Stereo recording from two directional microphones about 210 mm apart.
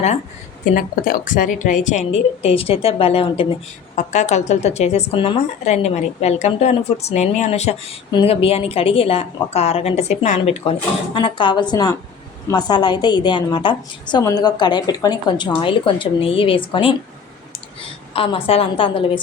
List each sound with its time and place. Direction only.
0.6 s a woman's voice: 40° left (ahead or behind); by 16.9 s 25° left (ahead or behind)
18.1 s a woman's voice: 25° left (ahead or behind)